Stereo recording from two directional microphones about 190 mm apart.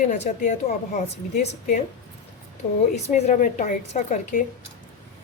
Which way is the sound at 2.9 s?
35° left (ahead or behind).